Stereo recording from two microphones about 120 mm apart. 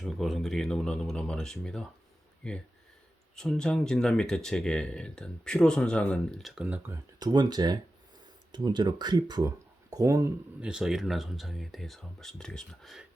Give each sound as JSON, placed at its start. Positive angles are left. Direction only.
{"t": 0.0, "sound": "speech", "side_deg": 0}
{"t": 6.4, "sound": "speech", "side_deg": -10}
{"t": 7.2, "sound": "speech", "side_deg": -35}
{"t": 10.6, "sound": "speech", "side_deg": -5}